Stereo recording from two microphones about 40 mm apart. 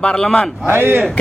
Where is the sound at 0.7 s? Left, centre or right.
Right.